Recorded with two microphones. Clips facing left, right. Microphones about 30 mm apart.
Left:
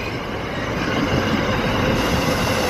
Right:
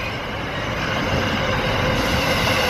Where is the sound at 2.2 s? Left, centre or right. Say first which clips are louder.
Right 1 dB; right.